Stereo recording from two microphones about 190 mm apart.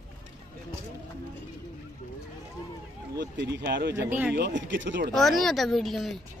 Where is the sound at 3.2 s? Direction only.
60° right (ahead or behind).